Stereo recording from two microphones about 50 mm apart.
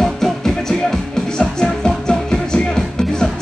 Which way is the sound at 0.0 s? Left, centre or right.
Centre.